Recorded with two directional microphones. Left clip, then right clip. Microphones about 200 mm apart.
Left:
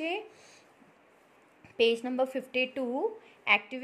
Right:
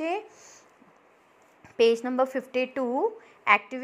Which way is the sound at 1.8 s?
15° right (ahead or behind).